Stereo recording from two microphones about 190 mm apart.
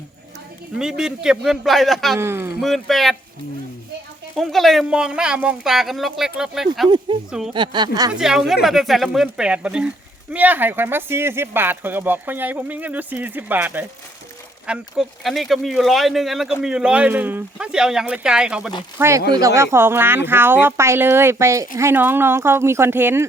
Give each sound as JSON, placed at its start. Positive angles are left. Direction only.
{"t": 0.8, "sound": "speech", "side_deg": -5}
{"t": 2.1, "sound": "speech", "side_deg": -15}
{"t": 2.6, "sound": "speech", "side_deg": 0}
{"t": 4.4, "sound": "speech", "side_deg": 0}
{"t": 7.5, "sound": "speech", "side_deg": -25}
{"t": 8.1, "sound": "speech", "side_deg": 0}